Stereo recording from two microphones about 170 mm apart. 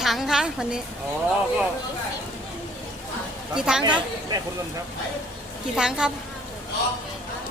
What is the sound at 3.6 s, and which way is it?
Speech, 5° right (ahead or behind).